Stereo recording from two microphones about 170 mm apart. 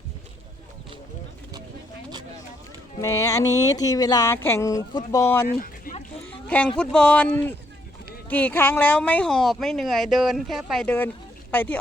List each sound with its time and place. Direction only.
3.0 s speech: 15° left (ahead or behind)
5.5 s a sound: 55° left (ahead or behind)
6.2 s a woman's voice: 10° left (ahead or behind)